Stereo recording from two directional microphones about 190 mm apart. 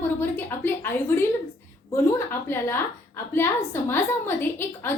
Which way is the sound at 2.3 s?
10° left (ahead or behind).